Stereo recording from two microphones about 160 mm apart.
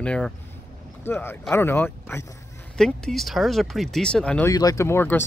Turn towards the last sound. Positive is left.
turn(degrees=15)  # may be behind; listen again after turning